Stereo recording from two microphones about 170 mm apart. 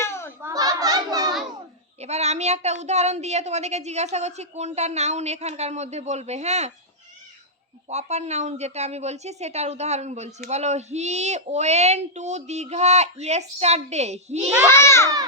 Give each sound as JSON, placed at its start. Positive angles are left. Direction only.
{"t": 0.0, "sound": "children playing", "side_deg": 15}
{"t": 0.4, "sound": "a sound", "side_deg": -20}
{"t": 2.0, "sound": "a woman's voice", "side_deg": -40}
{"t": 7.9, "sound": "a woman's voice", "side_deg": -40}
{"t": 14.7, "sound": "a child's voice", "side_deg": 15}